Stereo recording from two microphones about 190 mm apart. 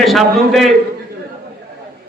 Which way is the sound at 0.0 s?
Centre (ahead or behind).